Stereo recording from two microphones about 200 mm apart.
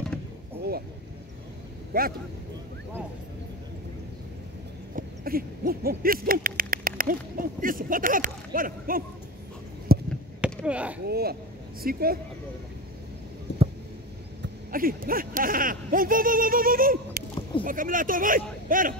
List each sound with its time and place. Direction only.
1.9 s speech: 45° right (ahead or behind)
4.9 s owl: 50° right (ahead or behind)
9.9 s basketball bounce: 50° right (ahead or behind)
10.4 s speech: 5° right (ahead or behind)
11.1 s speech: 50° right (ahead or behind)
13.5 s a sound: 60° left (ahead or behind)
14.7 s speech: 45° right (ahead or behind)